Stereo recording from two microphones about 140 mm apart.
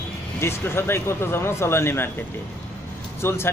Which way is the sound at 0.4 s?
15° left (ahead or behind).